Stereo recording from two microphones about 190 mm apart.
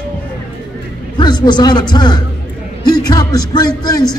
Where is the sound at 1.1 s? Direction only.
25° left (ahead or behind).